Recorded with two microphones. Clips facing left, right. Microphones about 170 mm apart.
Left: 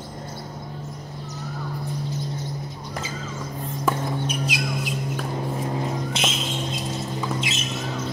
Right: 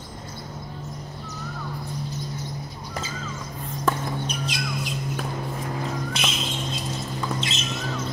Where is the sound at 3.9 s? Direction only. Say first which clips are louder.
Left 1 dB; 10° left (ahead or behind).